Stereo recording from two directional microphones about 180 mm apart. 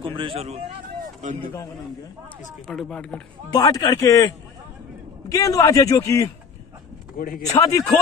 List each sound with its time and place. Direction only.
0.0 s speech: 30° right (ahead or behind)
2.6 s speech: centre (ahead or behind)
3.5 s a man's voice: 20° left (ahead or behind)
5.3 s a man's voice: 20° left (ahead or behind)
7.2 s speech: 50° left (ahead or behind)
7.5 s a man's voice: 20° left (ahead or behind)